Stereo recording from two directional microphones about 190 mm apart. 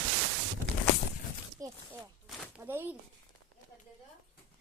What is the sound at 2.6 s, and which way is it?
Speech, 10° right (ahead or behind).